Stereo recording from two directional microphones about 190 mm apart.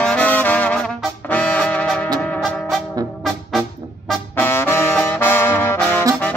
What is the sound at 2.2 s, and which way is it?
Music, 5° left (ahead or behind).